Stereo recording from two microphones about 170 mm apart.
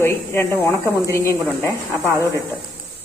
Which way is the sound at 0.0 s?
15° left (ahead or behind).